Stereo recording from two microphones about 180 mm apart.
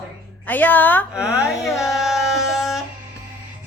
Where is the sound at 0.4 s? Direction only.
10° left (ahead or behind).